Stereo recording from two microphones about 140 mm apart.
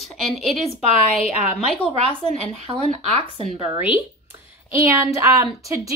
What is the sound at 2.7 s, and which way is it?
Speech, 45° right (ahead or behind).